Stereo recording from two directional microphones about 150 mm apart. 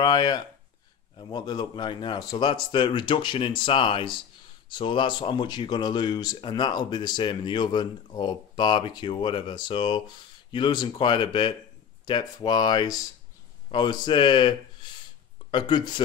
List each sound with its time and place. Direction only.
0.0 s speech: 30° left (ahead or behind)